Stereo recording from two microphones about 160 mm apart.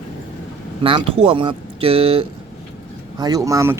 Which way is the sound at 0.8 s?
30° right (ahead or behind).